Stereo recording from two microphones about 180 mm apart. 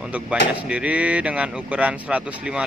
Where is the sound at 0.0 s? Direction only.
5° right (ahead or behind).